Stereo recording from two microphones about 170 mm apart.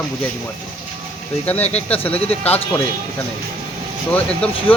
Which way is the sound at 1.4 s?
10° left (ahead or behind).